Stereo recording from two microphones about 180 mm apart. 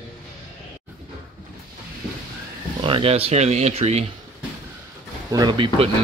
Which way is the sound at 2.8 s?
30° right (ahead or behind).